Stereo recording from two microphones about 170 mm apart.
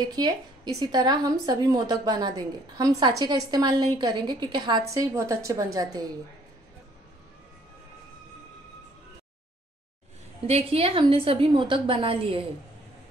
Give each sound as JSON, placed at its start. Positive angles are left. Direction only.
{"t": 0.0, "sound": "a woman's voice", "side_deg": -25}
{"t": 10.4, "sound": "a woman's voice", "side_deg": -35}